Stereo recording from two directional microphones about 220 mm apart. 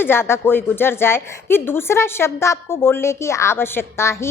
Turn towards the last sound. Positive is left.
turn(degrees=10)  # may be behind; listen again after turning